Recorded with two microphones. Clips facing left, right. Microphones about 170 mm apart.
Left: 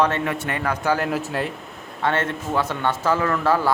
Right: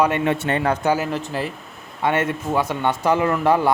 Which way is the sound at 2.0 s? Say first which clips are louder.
Right 2 dB; 10° right (ahead or behind).